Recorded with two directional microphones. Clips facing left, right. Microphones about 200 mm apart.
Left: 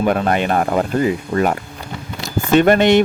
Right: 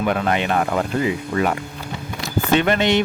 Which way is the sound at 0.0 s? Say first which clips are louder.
Left 4 dB; 40° left (ahead or behind).